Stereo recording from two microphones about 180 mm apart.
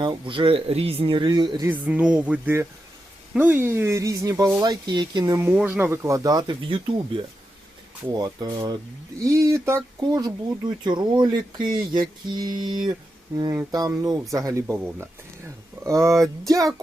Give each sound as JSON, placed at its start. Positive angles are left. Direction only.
{"t": 0.0, "sound": "speech", "side_deg": -25}
{"t": 1.7, "sound": "speech", "side_deg": -5}